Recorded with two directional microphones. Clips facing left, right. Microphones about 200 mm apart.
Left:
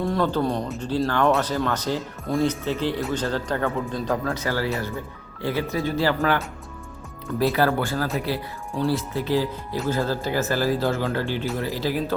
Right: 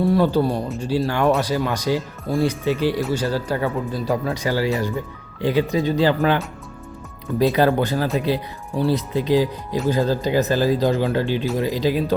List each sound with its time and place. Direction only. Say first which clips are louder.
0.0 s speech: right 5 dB; 10° right (ahead or behind)